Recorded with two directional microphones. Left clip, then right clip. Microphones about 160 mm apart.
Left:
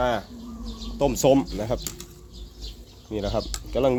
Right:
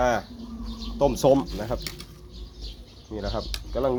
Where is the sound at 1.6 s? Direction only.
55° left (ahead or behind).